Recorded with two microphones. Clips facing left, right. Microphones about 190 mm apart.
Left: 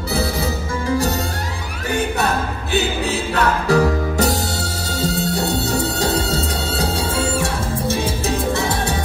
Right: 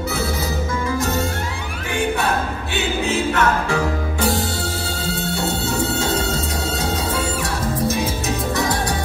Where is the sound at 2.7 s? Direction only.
35° left (ahead or behind).